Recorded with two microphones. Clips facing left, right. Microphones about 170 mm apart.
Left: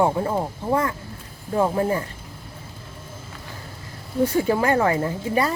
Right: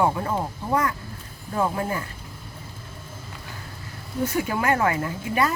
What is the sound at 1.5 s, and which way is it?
Speech, 30° left (ahead or behind).